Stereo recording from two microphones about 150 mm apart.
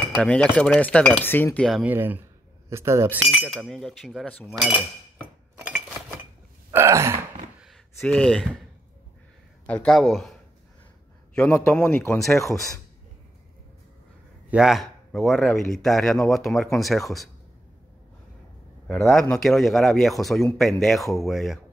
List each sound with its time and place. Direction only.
0.1 s cutlery: 5° left (ahead or behind)
1.8 s speech: 10° right (ahead or behind)
3.2 s speech: centre (ahead or behind)
6.7 s gasp: 20° right (ahead or behind)
7.6 s a sound: centre (ahead or behind)
9.7 s speech: 5° left (ahead or behind)
11.3 s cutlery: 10° left (ahead or behind)
14.5 s speech: 5° right (ahead or behind)
18.9 s speech: centre (ahead or behind)